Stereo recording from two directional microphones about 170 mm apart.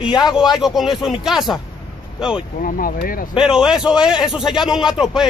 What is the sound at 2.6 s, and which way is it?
Speech, 55° left (ahead or behind).